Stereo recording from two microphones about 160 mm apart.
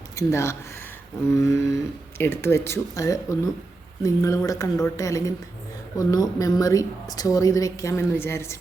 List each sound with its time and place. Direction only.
0.2 s a woman's voice: 20° left (ahead or behind)